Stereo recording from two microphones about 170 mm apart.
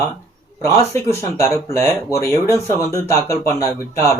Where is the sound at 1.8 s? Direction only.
20° left (ahead or behind).